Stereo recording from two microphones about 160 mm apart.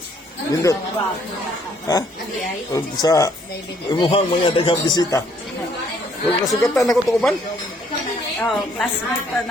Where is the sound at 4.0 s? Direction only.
35° left (ahead or behind).